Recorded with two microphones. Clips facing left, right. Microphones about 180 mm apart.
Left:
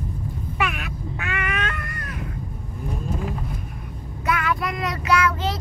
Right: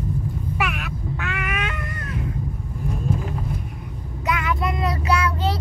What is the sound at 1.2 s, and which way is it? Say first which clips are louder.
Cat: left 2 dB; 5° right (ahead or behind).